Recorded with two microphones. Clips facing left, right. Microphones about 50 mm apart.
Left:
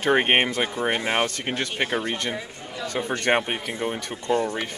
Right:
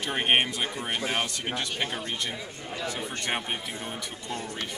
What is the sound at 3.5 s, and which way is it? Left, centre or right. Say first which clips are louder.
Speech: left 6 dB; left.